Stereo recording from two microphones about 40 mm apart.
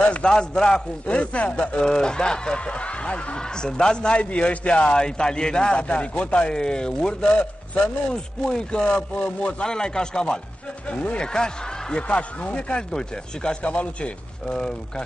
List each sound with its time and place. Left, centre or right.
0.0 s speech: left
0.3 s speech: centre
1.0 s speech: left
1.9 s speech: centre
3.4 s speech: centre
4.2 s speech: left
4.9 s speech: centre
7.2 s a man's voice: left
8.5 s speech: centre
10.9 s speech: left
11.2 s a man's voice: centre
12.1 s speech: left
13.6 s speech: left